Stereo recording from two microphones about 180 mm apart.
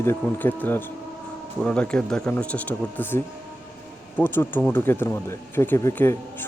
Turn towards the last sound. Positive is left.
turn(degrees=10)  # may be behind; listen again after turning